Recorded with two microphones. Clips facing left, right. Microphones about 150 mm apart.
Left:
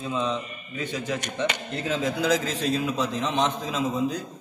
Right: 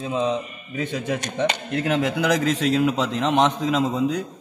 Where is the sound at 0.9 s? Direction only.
60° right (ahead or behind).